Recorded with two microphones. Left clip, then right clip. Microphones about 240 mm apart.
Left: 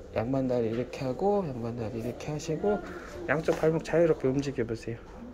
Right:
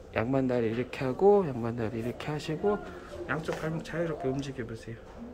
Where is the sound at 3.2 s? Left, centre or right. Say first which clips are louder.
Left 7 dB; centre.